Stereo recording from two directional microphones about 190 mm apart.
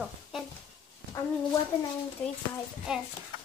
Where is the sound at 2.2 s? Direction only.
5° left (ahead or behind).